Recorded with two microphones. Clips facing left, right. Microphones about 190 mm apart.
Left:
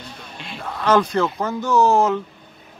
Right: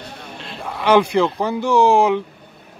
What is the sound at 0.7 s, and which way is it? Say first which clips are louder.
A man's voice: right 3 dB; 10° right (ahead or behind).